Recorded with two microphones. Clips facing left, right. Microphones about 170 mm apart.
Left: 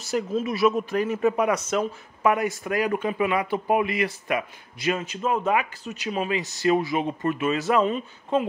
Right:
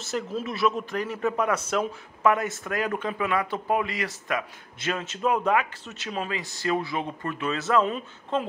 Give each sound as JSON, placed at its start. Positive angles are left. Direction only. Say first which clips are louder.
{"t": 0.1, "sound": "speech", "louder": "left 5 dB", "side_deg": 15}